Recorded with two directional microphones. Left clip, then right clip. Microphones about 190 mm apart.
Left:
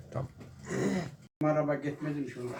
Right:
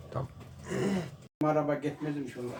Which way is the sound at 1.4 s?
Centre (ahead or behind).